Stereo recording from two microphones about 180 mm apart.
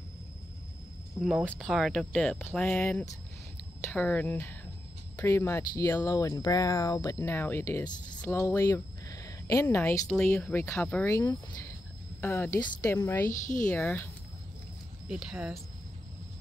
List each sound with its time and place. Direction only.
1.2 s speech: 5° left (ahead or behind)
12.5 s speech: 25° left (ahead or behind)
12.9 s speech: 10° left (ahead or behind)
13.3 s speech: 45° left (ahead or behind)
13.7 s speech: 10° left (ahead or behind)
15.0 s speech: 5° right (ahead or behind)